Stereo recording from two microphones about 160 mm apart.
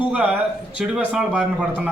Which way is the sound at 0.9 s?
5° right (ahead or behind).